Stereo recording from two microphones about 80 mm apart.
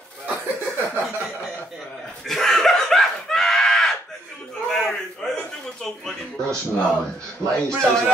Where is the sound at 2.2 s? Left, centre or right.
Centre.